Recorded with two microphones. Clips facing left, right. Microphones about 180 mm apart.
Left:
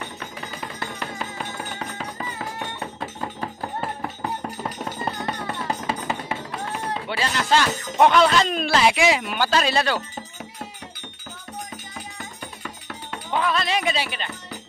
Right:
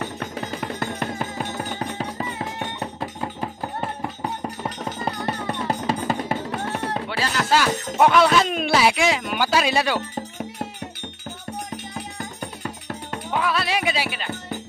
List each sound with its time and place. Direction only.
0.7 s music: 50° right (ahead or behind)
1.8 s music: 30° right (ahead or behind)
3.2 s a sound: 10° right (ahead or behind)
5.7 s drum: 40° right (ahead or behind)
7.1 s speech: centre (ahead or behind)
8.9 s speech: 5° left (ahead or behind)
9.4 s speech: 10° right (ahead or behind)
12.2 s music: 35° right (ahead or behind)
13.3 s music: 5° right (ahead or behind)